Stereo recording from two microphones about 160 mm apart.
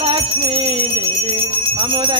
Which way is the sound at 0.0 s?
35° right (ahead or behind).